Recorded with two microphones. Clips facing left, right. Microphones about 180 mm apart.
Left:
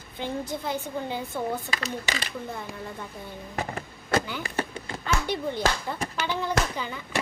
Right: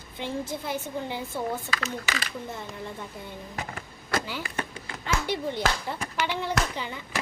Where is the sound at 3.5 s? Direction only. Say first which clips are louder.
Left 9 dB; 30° left (ahead or behind).